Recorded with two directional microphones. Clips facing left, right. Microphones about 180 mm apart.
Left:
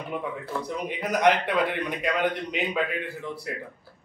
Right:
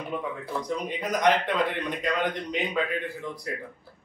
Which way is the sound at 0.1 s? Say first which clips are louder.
Left 1 dB; 10° left (ahead or behind).